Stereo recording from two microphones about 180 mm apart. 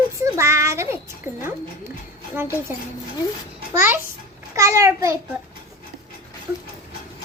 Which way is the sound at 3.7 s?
10° right (ahead or behind).